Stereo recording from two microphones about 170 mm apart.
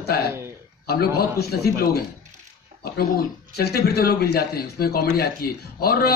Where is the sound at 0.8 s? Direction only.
65° left (ahead or behind).